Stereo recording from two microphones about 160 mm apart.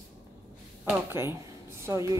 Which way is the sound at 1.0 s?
15° right (ahead or behind).